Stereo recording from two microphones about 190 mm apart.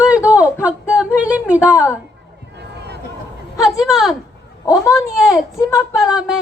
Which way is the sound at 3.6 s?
Centre (ahead or behind).